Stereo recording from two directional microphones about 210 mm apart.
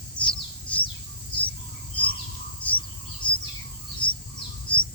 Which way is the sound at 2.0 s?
5° left (ahead or behind).